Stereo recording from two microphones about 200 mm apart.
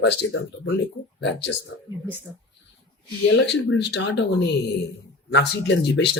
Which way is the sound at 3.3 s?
65° left (ahead or behind).